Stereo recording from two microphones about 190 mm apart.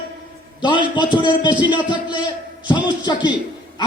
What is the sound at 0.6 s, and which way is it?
A man's voice, 25° left (ahead or behind).